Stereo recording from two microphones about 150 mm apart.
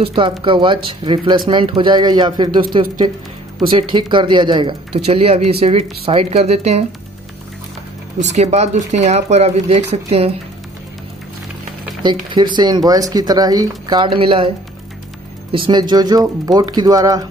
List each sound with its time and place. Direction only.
0.0 s speech: 35° right (ahead or behind)
8.2 s speech: 50° right (ahead or behind)
12.0 s speech: 30° right (ahead or behind)
15.5 s speech: 30° right (ahead or behind)